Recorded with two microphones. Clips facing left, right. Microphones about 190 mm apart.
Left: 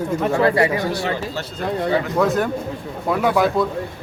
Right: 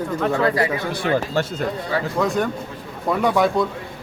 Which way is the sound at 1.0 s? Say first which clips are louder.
Right 4 dB; 55° right (ahead or behind).